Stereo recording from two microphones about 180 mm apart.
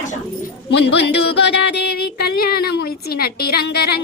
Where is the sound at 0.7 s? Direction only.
70° left (ahead or behind).